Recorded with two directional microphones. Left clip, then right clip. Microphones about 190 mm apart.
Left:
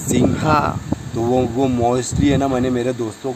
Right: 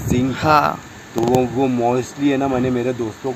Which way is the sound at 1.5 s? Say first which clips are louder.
Even; 20° left (ahead or behind).